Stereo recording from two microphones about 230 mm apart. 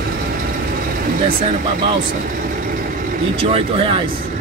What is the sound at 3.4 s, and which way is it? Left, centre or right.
Speech, right.